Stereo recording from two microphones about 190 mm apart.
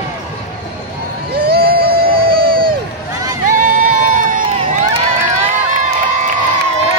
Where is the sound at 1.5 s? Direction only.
55° right (ahead or behind).